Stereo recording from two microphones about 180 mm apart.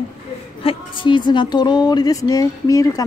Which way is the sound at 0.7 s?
25° left (ahead or behind).